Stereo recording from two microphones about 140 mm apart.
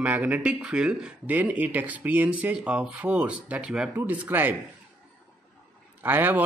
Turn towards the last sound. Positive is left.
turn(degrees=-15)  # may be behind; listen again after turning